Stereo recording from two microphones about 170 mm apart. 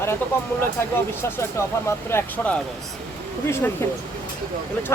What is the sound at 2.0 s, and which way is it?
Speech, 10° left (ahead or behind).